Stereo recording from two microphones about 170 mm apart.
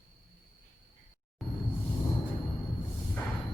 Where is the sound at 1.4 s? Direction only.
Centre (ahead or behind).